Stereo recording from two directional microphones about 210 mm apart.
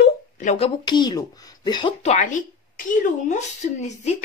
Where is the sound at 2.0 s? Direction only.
35° left (ahead or behind).